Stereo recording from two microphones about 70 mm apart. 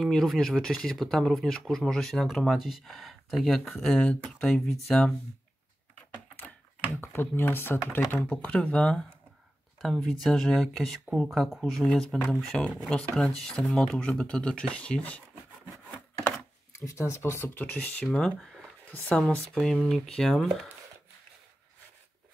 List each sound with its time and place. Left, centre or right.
0.0 s speech: centre
7.0 s speech: left
16.8 s speech: left
18.4 s a sound: centre
18.9 s speech: left
19.5 s speech: centre